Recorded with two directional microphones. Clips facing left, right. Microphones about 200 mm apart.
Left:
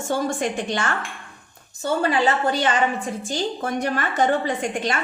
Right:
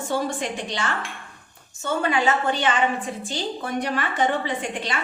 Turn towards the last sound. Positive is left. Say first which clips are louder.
# left 4 dB
turn(degrees=45)  # may be behind; listen again after turning